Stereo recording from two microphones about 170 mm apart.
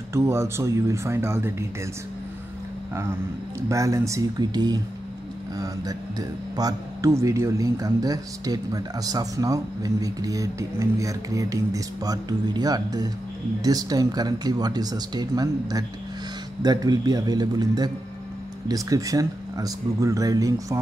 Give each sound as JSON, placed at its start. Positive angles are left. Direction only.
{"t": 0.1, "sound": "speech", "side_deg": -15}
{"t": 3.6, "sound": "speech", "side_deg": -20}